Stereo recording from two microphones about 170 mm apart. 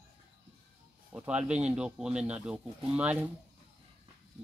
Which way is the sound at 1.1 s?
5° right (ahead or behind).